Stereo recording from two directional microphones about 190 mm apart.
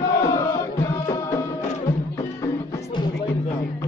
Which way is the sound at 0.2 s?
15° left (ahead or behind).